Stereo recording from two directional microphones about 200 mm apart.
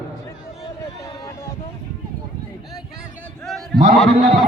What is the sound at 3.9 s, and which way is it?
Speech, centre (ahead or behind).